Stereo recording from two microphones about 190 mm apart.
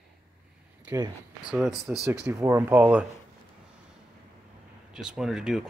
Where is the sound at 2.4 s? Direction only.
10° right (ahead or behind).